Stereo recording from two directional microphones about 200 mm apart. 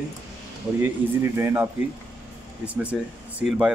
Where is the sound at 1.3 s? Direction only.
10° right (ahead or behind).